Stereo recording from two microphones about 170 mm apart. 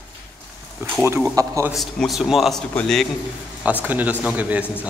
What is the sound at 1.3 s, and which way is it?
Speech, 20° right (ahead or behind).